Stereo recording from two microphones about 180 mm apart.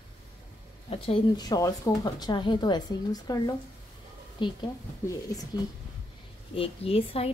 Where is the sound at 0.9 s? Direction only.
25° left (ahead or behind).